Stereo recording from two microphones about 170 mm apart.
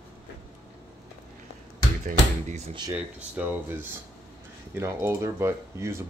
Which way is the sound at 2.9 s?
10° right (ahead or behind).